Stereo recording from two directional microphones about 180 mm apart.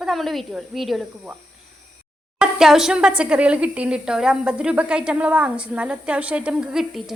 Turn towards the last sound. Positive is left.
turn(degrees=0)  # may be behind; listen again after turning